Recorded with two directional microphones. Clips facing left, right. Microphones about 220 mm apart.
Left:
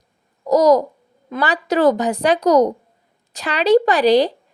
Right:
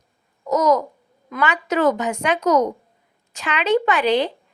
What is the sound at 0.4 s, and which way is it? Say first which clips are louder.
Babbling: left 5 dB; 35° left (ahead or behind).